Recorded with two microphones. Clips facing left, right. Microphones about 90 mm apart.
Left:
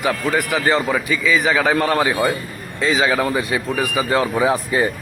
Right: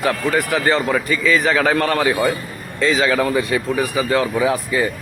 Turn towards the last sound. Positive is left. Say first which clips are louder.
# left 1 dB
turn(degrees=30)  # may be behind; listen again after turning